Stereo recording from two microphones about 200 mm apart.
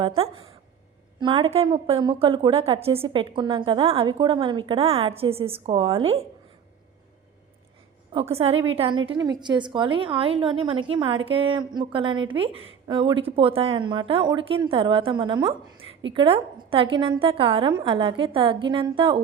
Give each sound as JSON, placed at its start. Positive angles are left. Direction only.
{"t": 0.0, "sound": "a woman's voice", "side_deg": -30}
{"t": 8.1, "sound": "a woman's voice", "side_deg": -30}